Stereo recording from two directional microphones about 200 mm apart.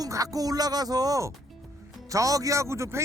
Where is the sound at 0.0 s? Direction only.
15° right (ahead or behind).